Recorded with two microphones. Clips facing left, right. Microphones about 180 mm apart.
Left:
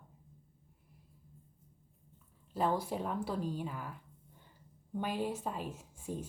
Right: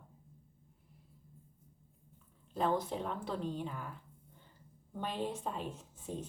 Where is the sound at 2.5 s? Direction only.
5° left (ahead or behind).